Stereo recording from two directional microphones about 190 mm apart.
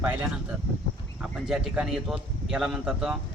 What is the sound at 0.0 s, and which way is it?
A man's voice, 10° right (ahead or behind).